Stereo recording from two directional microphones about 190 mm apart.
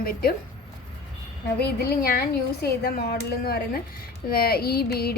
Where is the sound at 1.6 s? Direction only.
55° left (ahead or behind).